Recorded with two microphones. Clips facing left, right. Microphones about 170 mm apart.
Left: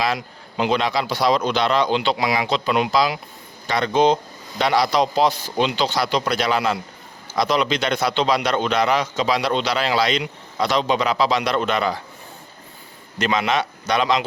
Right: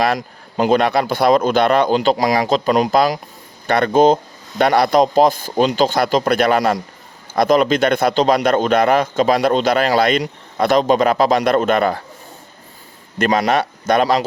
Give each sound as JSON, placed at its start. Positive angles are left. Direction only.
{"t": 0.0, "sound": "a man's voice", "side_deg": -50}
{"t": 13.1, "sound": "a man's voice", "side_deg": -45}